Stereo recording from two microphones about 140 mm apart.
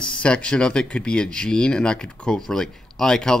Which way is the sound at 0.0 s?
5° left (ahead or behind).